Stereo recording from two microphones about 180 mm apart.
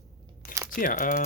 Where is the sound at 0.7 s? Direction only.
50° left (ahead or behind).